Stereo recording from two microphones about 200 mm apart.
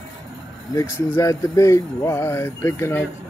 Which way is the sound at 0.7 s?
15° left (ahead or behind).